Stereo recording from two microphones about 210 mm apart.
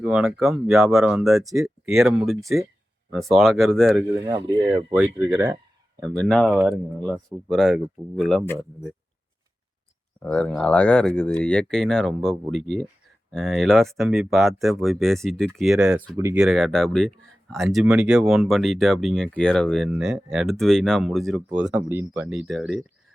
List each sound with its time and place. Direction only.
0.0 s speech: 5° right (ahead or behind)
1.4 s speech: 15° right (ahead or behind)
1.6 s speech: centre (ahead or behind)
4.4 s speech: 20° right (ahead or behind)
6.0 s speech: 5° left (ahead or behind)
10.2 s speech: 5° left (ahead or behind)